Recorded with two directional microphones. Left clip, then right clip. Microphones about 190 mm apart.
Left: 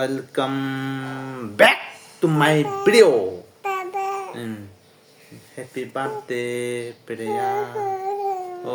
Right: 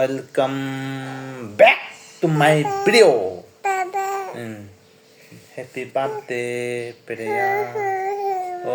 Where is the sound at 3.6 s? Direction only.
Centre (ahead or behind).